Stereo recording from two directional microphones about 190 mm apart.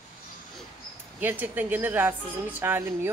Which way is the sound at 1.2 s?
10° right (ahead or behind).